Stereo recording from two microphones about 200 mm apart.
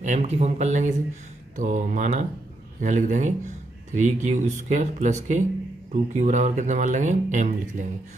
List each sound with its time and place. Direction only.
0.0 s speech: 35° right (ahead or behind)